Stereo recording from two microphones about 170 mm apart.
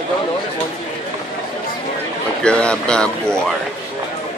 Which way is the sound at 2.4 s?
5° left (ahead or behind).